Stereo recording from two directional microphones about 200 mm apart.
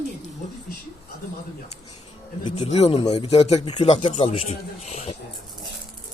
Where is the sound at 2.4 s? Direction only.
25° left (ahead or behind).